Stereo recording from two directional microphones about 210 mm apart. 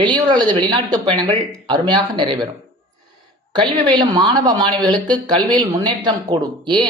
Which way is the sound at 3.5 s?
20° right (ahead or behind).